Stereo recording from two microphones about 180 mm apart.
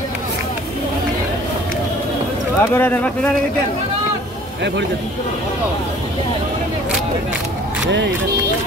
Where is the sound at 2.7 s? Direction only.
10° left (ahead or behind).